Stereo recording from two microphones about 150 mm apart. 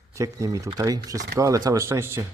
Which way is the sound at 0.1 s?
20° right (ahead or behind).